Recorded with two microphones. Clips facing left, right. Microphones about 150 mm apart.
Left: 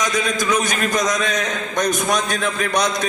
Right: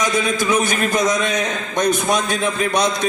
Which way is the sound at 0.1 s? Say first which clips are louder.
Right 2 dB; 25° right (ahead or behind).